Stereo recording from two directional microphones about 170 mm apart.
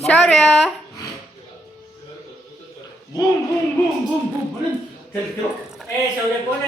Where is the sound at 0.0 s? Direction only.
5° left (ahead or behind).